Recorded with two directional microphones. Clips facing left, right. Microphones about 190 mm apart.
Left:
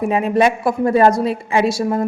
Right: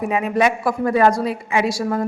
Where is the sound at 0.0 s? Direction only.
30° left (ahead or behind).